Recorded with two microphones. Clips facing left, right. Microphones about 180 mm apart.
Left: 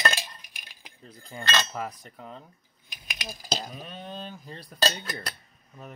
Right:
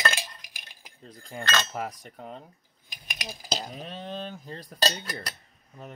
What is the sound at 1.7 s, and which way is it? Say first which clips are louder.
Speech: right 1 dB; 40° right (ahead or behind).